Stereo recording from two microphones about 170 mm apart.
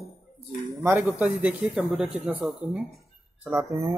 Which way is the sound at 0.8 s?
10° right (ahead or behind).